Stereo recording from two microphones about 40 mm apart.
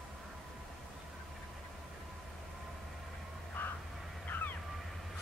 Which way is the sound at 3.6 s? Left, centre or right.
Left.